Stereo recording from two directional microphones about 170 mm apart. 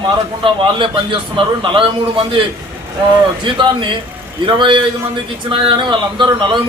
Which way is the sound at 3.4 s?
30° right (ahead or behind).